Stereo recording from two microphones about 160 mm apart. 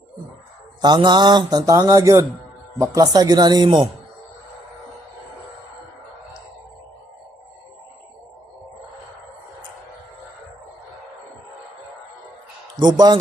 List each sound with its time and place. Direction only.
0.8 s a man's voice: 30° right (ahead or behind)
12.7 s a man's voice: 25° right (ahead or behind)